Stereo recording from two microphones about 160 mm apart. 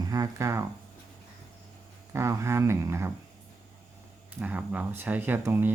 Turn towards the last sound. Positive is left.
turn(degrees=-10)  # may be behind; listen again after turning